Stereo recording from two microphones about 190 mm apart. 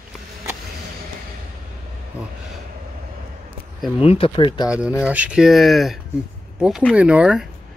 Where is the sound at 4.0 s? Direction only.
30° left (ahead or behind).